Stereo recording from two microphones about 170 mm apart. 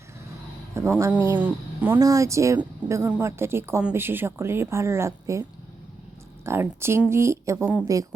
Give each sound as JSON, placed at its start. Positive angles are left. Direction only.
{"t": 0.7, "sound": "speech", "side_deg": -15}